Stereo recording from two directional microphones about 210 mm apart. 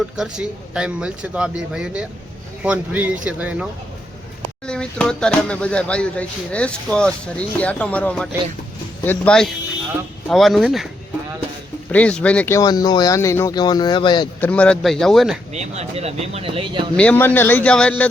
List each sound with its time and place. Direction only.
0.2 s speech: 5° right (ahead or behind)
4.6 s speech: 5° left (ahead or behind)
11.9 s speech: 5° left (ahead or behind); by 14.3 s 20° left (ahead or behind)
14.4 s speech: 5° left (ahead or behind)
15.5 s speech: 30° right (ahead or behind)
17.0 s speech: 5° left (ahead or behind)